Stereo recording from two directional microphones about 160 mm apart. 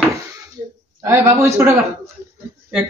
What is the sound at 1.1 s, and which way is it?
Speech, 15° right (ahead or behind).